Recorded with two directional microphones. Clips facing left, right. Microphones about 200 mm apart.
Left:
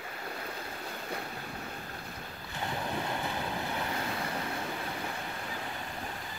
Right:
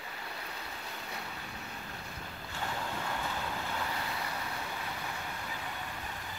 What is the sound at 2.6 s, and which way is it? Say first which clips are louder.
Vehicle: left 3 dB; 25° left (ahead or behind).